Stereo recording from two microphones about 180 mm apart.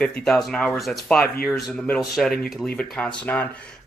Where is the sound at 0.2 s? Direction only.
Centre (ahead or behind).